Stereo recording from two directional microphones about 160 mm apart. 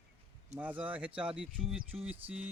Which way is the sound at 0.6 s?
10° right (ahead or behind).